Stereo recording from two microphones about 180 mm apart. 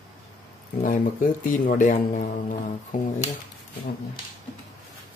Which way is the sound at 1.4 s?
50° left (ahead or behind).